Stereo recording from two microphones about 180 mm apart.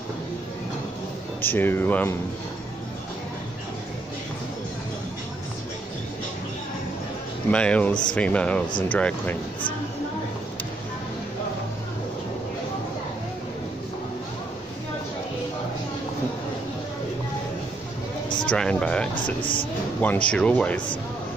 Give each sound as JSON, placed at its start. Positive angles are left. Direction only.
{"t": 1.4, "sound": "speech", "side_deg": 10}
{"t": 7.5, "sound": "speech", "side_deg": 5}
{"t": 18.4, "sound": "speech", "side_deg": 5}
{"t": 19.4, "sound": "speech", "side_deg": 30}
{"t": 20.0, "sound": "speech", "side_deg": 10}